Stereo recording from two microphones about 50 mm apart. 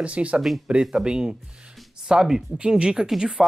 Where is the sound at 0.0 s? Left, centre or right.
Right.